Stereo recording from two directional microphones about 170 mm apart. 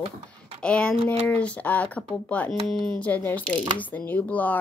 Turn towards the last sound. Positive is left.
turn(degrees=10)  # may be behind; listen again after turning